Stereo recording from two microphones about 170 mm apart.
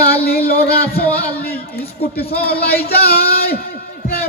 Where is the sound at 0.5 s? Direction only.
65° left (ahead or behind).